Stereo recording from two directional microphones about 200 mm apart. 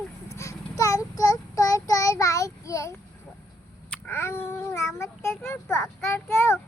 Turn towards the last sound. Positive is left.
turn(degrees=10)  # may be behind; listen again after turning